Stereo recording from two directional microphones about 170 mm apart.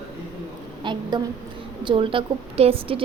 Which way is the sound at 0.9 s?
25° right (ahead or behind).